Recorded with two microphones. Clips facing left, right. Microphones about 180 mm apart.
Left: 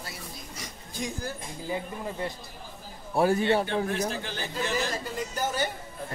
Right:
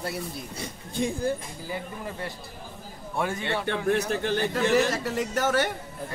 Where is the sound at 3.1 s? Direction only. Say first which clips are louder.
Left 6 dB; 35° left (ahead or behind).